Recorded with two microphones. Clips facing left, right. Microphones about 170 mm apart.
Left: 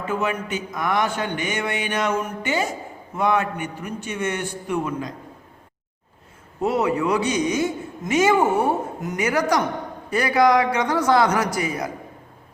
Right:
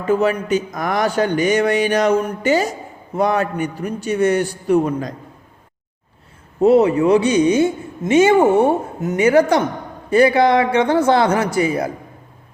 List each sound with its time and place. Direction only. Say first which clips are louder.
0.1 s speech: right 9 dB; 35° right (ahead or behind)
6.6 s a man's voice: right 9 dB; 30° right (ahead or behind)